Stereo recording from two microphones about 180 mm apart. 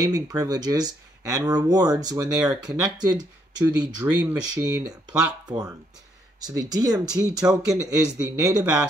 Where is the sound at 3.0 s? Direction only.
20° right (ahead or behind).